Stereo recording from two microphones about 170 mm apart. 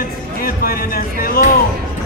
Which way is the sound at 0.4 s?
60° left (ahead or behind).